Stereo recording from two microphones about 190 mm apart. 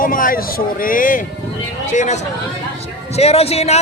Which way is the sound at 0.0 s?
45° left (ahead or behind).